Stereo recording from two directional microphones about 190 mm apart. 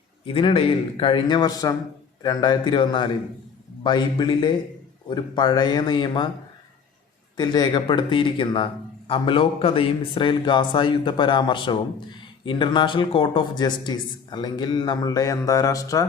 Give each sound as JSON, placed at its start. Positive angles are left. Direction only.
{"t": 0.3, "sound": "speech", "side_deg": 30}
{"t": 7.3, "sound": "speech", "side_deg": 20}